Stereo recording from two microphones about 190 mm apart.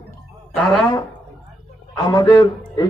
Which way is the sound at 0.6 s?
Centre (ahead or behind).